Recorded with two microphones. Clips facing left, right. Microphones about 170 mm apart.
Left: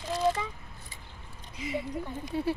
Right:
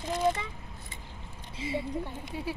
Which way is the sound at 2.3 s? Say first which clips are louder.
Left 7 dB; 10° right (ahead or behind).